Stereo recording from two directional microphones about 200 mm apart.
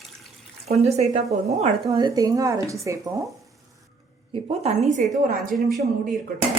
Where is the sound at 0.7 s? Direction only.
30° right (ahead or behind).